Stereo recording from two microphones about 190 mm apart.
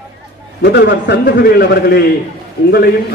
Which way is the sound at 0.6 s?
65° left (ahead or behind).